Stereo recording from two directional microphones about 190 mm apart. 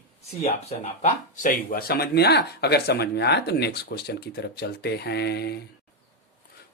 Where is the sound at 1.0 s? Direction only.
45° left (ahead or behind).